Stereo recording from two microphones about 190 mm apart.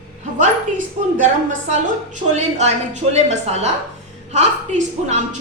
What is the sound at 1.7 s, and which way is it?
A woman's voice, 40° right (ahead or behind).